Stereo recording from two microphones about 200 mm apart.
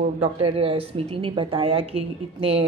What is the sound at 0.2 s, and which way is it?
Speech, 30° right (ahead or behind).